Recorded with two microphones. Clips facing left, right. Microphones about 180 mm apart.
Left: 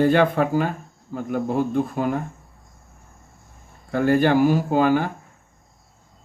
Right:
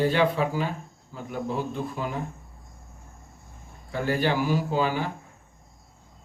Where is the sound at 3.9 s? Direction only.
50° left (ahead or behind).